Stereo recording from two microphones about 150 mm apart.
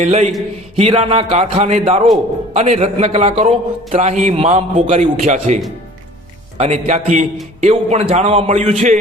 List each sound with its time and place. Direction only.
0.0 s a man's voice: 50° right (ahead or behind)
0.8 s a man's voice: 40° right (ahead or behind)
6.6 s a man's voice: 50° right (ahead or behind)